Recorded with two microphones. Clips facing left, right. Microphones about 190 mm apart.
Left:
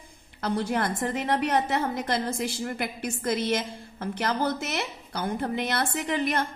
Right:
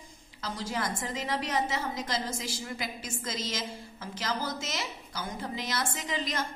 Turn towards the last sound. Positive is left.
turn(degrees=60)  # may be behind; listen again after turning